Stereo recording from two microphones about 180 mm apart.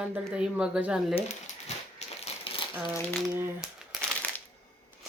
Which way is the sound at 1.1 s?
35° left (ahead or behind).